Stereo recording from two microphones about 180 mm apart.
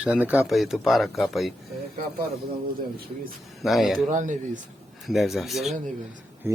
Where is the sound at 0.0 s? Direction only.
10° right (ahead or behind).